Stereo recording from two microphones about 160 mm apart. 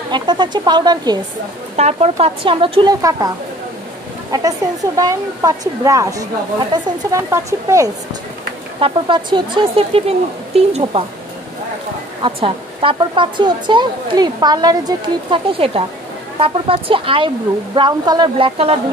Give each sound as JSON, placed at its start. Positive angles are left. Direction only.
{"t": 0.1, "sound": "speech", "side_deg": -30}
{"t": 1.8, "sound": "speech", "side_deg": -40}
{"t": 8.7, "sound": "speech", "side_deg": -30}
{"t": 12.2, "sound": "speech", "side_deg": -35}